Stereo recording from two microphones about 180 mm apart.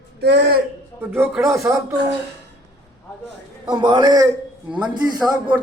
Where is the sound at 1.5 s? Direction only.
15° right (ahead or behind).